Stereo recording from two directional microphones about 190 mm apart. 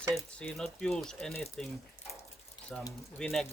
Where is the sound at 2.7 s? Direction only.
5° left (ahead or behind).